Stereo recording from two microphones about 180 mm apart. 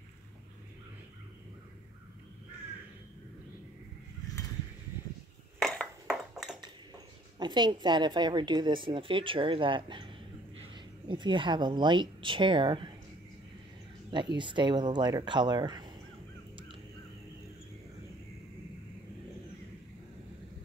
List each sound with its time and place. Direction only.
5.6 s ping: 5° left (ahead or behind)
7.3 s a woman's voice: 25° right (ahead or behind)
14.1 s a woman's voice: 25° right (ahead or behind)
16.5 s crow: 30° right (ahead or behind)